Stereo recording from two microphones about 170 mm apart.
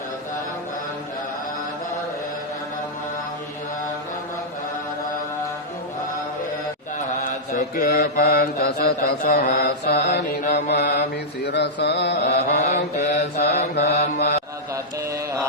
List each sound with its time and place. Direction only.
7.5 s mantra: 50° left (ahead or behind)
7.9 s mantra: 65° left (ahead or behind)
12.5 s mantra: 45° left (ahead or behind)
13.6 s mantra: 75° left (ahead or behind)